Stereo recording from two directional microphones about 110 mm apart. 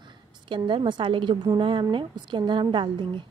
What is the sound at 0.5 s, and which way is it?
A woman's voice, 45° right (ahead or behind).